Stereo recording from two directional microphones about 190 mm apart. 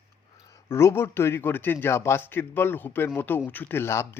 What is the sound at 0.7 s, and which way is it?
Speech, 15° left (ahead or behind).